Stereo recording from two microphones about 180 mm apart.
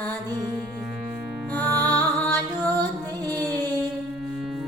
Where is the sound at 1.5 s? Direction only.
10° left (ahead or behind).